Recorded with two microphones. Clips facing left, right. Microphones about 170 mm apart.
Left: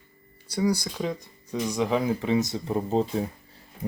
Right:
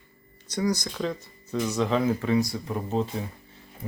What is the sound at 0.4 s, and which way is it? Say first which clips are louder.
Speech: left 2 dB; 10° left (ahead or behind).